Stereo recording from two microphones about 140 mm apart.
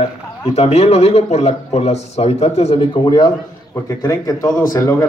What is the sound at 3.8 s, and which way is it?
Speech, 25° left (ahead or behind).